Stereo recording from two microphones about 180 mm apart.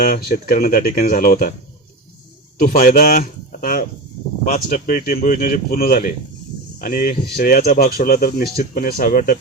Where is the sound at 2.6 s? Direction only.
50° left (ahead or behind).